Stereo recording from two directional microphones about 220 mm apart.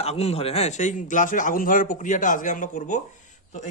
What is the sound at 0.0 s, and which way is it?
A man's voice, 30° left (ahead or behind).